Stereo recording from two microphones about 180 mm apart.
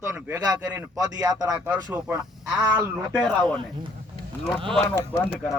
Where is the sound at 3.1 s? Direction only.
5° left (ahead or behind).